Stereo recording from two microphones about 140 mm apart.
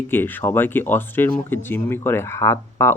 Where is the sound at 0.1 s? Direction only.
15° left (ahead or behind).